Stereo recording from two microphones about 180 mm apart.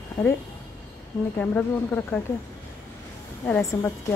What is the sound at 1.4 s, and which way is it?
Speech, 10° left (ahead or behind).